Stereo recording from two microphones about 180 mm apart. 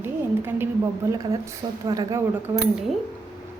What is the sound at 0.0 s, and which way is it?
A woman's voice, 15° right (ahead or behind).